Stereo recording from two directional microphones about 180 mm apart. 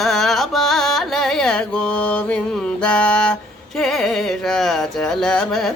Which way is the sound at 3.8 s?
Centre (ahead or behind).